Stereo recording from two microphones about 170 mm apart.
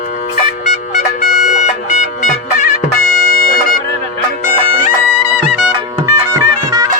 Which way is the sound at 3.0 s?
60° left (ahead or behind).